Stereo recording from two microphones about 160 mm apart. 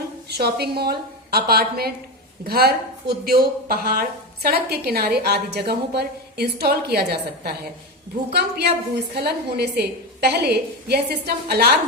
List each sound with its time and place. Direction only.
0.3 s a woman's voice: 90° right